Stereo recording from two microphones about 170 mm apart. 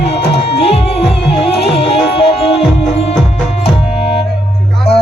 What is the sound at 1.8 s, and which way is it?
Music, 35° left (ahead or behind).